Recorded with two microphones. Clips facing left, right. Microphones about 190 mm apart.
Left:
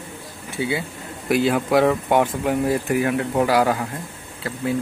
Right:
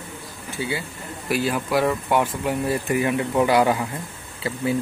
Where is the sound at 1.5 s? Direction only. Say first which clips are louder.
Left 4 dB; 20° left (ahead or behind); by 3.8 s centre (ahead or behind).